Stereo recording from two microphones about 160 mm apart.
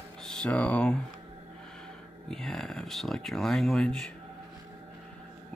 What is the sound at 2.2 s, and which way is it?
Speech, centre (ahead or behind).